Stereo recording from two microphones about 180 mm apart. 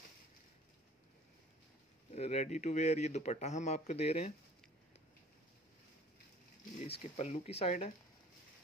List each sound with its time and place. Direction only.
2.1 s a man's voice: 35° left (ahead or behind)
6.8 s a man's voice: 35° left (ahead or behind)